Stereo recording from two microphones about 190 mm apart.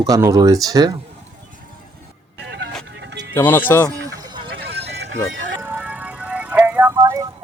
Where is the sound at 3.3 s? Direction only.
10° left (ahead or behind).